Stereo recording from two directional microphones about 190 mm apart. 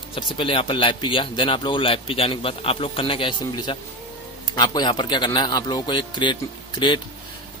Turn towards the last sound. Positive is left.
turn(degrees=25)  # may be behind; listen again after turning